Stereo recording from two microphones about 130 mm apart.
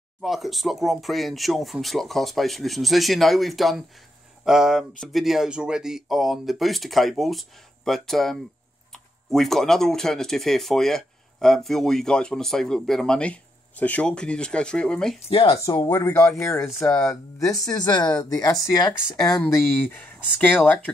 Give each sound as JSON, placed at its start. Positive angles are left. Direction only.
{"t": 0.2, "sound": "speech", "side_deg": 0}
{"t": 15.2, "sound": "speech", "side_deg": 45}
{"t": 15.9, "sound": "speech", "side_deg": 20}
{"t": 19.5, "sound": "speech", "side_deg": 15}